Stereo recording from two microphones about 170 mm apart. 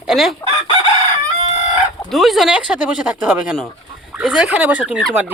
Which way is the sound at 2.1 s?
Centre (ahead or behind).